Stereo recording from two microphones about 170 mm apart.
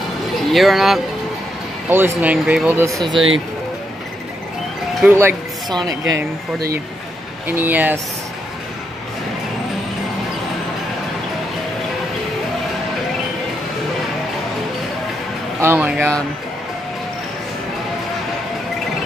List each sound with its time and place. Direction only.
0.5 s speech: centre (ahead or behind)
1.9 s speech: 10° right (ahead or behind)
5.0 s speech: 15° right (ahead or behind)
6.0 s speech: 75° right (ahead or behind)
7.4 s speech: 10° right (ahead or behind)
15.6 s speech: 10° right (ahead or behind)
16.0 s speech: 5° left (ahead or behind)